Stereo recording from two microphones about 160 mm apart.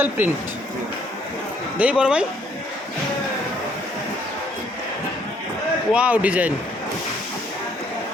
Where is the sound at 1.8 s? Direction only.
5° right (ahead or behind).